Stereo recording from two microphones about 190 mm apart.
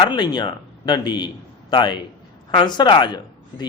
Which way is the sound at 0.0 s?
25° left (ahead or behind).